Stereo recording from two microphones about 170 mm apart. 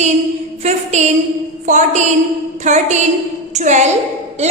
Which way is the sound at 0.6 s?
40° right (ahead or behind).